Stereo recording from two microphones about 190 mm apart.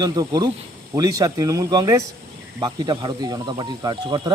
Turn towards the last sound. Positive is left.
turn(degrees=-25)  # may be behind; listen again after turning